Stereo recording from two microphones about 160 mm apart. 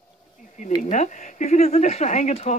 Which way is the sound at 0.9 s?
50° left (ahead or behind).